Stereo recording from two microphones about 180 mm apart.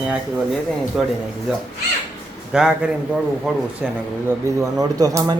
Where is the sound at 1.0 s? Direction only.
Centre (ahead or behind).